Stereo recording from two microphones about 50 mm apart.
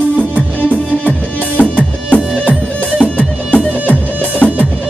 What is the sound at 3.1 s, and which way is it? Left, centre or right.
Music, left.